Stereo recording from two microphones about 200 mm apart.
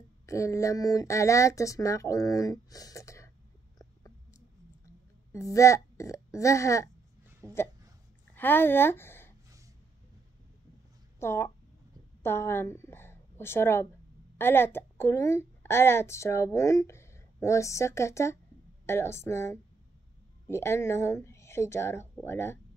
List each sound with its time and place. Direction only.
0.3 s a woman's voice: 15° left (ahead or behind)
5.3 s speech: 15° left (ahead or behind)
7.4 s speech: 15° right (ahead or behind)
8.4 s speech: 10° left (ahead or behind)
11.1 s a woman's voice: 10° left (ahead or behind)